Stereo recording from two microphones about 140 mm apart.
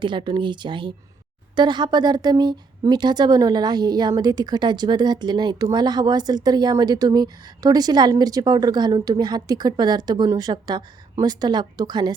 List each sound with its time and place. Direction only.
0.0 s a woman's voice: 35° right (ahead or behind)